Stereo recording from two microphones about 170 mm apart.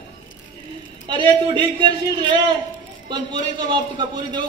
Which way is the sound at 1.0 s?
25° right (ahead or behind).